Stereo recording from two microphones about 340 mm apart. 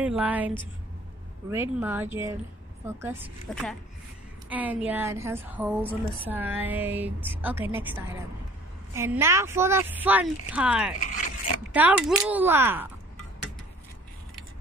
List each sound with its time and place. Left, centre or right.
0.0 s a woman's voice: centre
1.5 s a woman's voice: centre
11.0 s speech: left
11.7 s a woman's voice: centre